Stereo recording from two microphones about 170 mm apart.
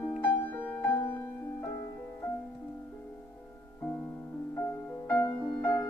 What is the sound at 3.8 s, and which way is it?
Music, 10° left (ahead or behind).